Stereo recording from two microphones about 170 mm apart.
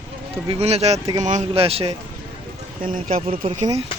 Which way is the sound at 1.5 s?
35° right (ahead or behind).